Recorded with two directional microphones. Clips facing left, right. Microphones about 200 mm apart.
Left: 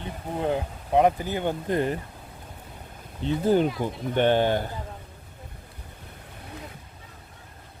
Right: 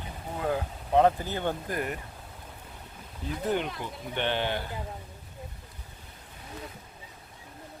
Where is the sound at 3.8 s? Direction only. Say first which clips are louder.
Left 9 dB; 45° left (ahead or behind).